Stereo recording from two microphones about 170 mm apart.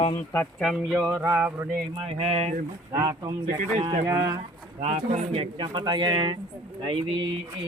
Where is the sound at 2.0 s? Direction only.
35° right (ahead or behind).